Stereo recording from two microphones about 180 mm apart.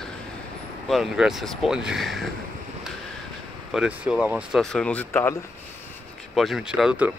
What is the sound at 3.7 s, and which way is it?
Speech, 5° right (ahead or behind).